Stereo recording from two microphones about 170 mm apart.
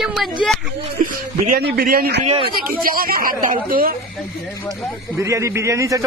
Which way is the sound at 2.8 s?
60° right (ahead or behind).